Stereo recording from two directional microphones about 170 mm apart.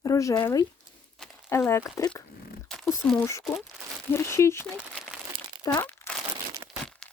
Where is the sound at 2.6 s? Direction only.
5° left (ahead or behind).